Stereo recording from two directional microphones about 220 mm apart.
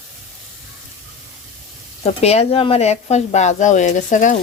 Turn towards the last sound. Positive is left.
turn(degrees=35)  # may be behind; listen again after turning